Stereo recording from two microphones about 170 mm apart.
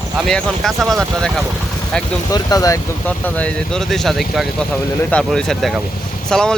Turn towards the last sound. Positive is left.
turn(degrees=5)  # may be behind; listen again after turning